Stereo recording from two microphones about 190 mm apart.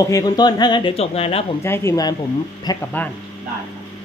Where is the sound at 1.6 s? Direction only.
15° left (ahead or behind).